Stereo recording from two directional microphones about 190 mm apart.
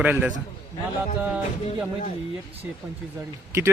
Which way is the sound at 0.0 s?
5° right (ahead or behind).